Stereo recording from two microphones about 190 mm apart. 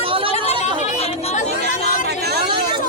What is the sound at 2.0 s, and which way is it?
Hubbub, 60° right (ahead or behind).